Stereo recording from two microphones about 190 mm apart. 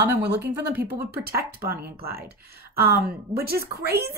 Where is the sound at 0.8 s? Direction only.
55° right (ahead or behind).